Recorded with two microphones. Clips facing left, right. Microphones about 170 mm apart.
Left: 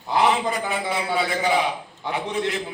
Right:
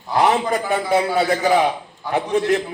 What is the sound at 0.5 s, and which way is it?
A man's voice, 45° right (ahead or behind).